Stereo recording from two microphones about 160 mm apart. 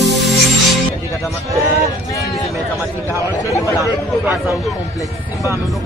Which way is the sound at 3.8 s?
15° right (ahead or behind).